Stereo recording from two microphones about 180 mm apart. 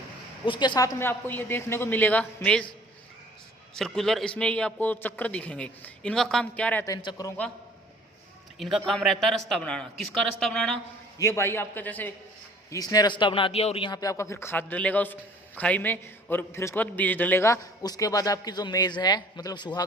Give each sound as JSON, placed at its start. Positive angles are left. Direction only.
{"t": 0.4, "sound": "a man's voice", "side_deg": 25}
{"t": 3.8, "sound": "a man's voice", "side_deg": 0}
{"t": 6.8, "sound": "a man's voice", "side_deg": 20}
{"t": 8.5, "sound": "a man's voice", "side_deg": 0}
{"t": 11.2, "sound": "a man's voice", "side_deg": 15}
{"t": 12.7, "sound": "a man's voice", "side_deg": 20}